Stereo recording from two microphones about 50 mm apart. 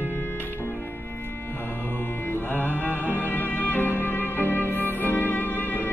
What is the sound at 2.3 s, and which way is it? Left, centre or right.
Music, left.